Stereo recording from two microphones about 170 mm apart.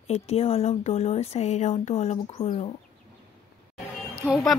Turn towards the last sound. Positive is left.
turn(degrees=0)  # may be behind; listen again after turning